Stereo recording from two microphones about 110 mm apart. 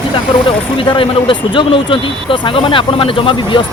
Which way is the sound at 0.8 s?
55° left (ahead or behind).